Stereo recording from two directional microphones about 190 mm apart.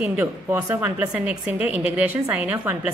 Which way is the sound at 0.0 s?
10° right (ahead or behind).